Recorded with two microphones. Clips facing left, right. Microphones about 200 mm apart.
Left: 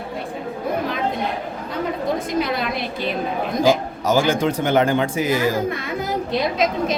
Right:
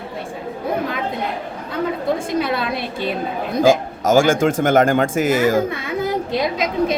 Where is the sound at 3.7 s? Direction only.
50° right (ahead or behind).